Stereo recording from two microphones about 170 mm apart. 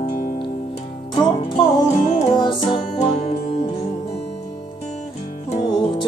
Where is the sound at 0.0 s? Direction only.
50° left (ahead or behind).